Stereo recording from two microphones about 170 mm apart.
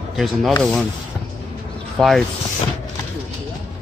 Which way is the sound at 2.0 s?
5° left (ahead or behind).